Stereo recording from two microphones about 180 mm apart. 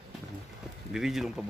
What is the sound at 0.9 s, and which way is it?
Speech, centre (ahead or behind).